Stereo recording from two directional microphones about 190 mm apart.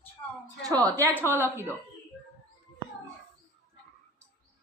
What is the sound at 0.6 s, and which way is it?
Speech, 20° right (ahead or behind).